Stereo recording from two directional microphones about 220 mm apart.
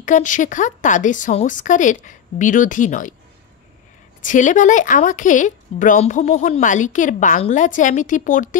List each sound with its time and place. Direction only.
0.0 s a woman's voice: 35° left (ahead or behind)
4.2 s a woman's voice: 35° left (ahead or behind)